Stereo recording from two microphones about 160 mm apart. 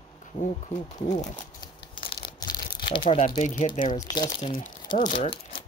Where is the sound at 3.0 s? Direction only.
40° left (ahead or behind).